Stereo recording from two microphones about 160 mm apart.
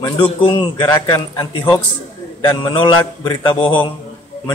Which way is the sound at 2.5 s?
30° left (ahead or behind).